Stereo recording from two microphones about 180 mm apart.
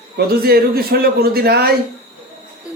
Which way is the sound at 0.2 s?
60° right (ahead or behind).